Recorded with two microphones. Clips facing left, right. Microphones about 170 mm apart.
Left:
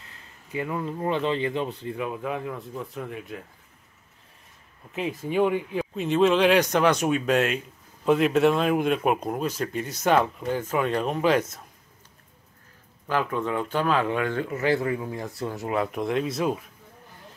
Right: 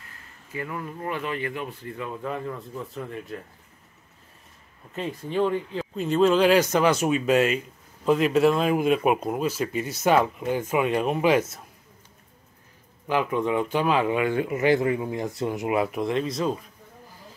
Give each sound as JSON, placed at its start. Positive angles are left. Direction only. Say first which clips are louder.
{"t": 0.5, "sound": "speech", "louder": "left 4 dB", "side_deg": 20}
{"t": 4.9, "sound": "speech", "louder": "left 2 dB", "side_deg": 5}
{"t": 5.9, "sound": "speech", "louder": "right 1 dB", "side_deg": 0}
{"t": 13.0, "sound": "speech", "louder": "right 2 dB", "side_deg": -15}